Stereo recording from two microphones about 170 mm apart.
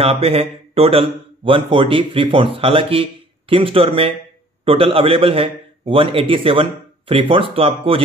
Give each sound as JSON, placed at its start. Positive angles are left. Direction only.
{"t": 0.0, "sound": "speech", "side_deg": -35}